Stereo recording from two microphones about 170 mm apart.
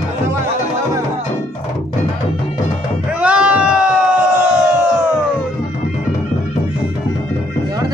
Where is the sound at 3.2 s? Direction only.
5° right (ahead or behind).